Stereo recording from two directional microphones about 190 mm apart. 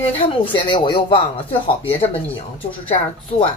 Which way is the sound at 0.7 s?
25° left (ahead or behind).